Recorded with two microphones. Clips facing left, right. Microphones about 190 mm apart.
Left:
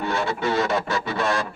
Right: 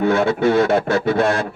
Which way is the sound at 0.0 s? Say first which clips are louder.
Right 9 dB; 55° right (ahead or behind).